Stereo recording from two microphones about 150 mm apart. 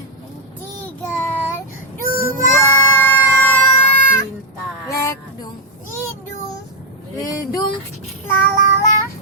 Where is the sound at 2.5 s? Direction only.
15° left (ahead or behind).